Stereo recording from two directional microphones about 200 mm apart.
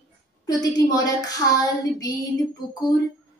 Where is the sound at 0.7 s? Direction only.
20° left (ahead or behind).